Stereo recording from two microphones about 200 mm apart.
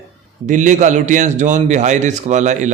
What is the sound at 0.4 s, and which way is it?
A man's voice, 40° right (ahead or behind).